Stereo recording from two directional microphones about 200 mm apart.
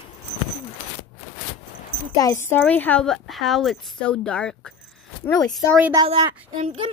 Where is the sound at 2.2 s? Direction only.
15° left (ahead or behind).